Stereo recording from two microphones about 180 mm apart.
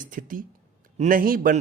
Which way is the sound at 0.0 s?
50° right (ahead or behind).